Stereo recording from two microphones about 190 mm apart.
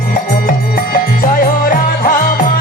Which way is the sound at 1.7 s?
45° left (ahead or behind).